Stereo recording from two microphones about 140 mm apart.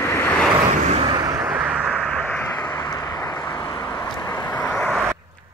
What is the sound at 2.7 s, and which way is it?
Vehicle, 20° left (ahead or behind).